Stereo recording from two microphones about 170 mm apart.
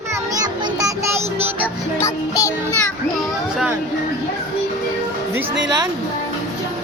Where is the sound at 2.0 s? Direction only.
20° left (ahead or behind).